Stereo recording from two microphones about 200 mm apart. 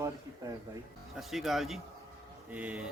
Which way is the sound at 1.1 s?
Centre (ahead or behind).